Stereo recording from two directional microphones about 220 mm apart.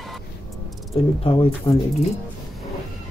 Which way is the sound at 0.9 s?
25° left (ahead or behind).